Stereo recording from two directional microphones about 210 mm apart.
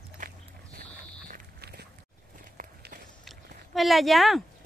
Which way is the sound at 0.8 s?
45° right (ahead or behind).